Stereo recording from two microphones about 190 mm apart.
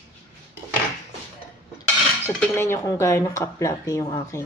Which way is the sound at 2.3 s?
10° left (ahead or behind).